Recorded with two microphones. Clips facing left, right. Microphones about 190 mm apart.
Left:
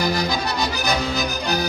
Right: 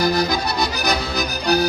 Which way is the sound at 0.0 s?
15° left (ahead or behind).